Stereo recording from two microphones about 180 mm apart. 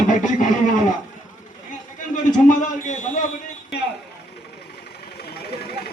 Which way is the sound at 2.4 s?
45° left (ahead or behind).